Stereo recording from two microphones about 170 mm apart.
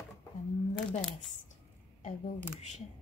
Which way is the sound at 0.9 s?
Centre (ahead or behind).